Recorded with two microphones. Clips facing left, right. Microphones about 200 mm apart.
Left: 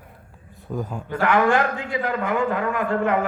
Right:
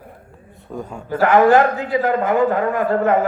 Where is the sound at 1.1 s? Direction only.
40° right (ahead or behind).